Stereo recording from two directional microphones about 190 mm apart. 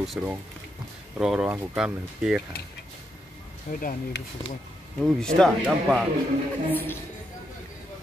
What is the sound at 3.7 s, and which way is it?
Speech, 45° left (ahead or behind).